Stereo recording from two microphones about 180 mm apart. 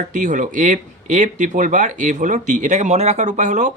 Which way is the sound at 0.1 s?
45° right (ahead or behind).